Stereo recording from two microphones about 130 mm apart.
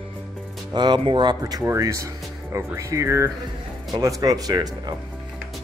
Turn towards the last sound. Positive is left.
turn(degrees=-30)  # may be behind; listen again after turning